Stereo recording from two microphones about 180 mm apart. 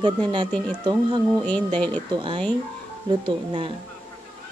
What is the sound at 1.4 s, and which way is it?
Speech, 5° left (ahead or behind).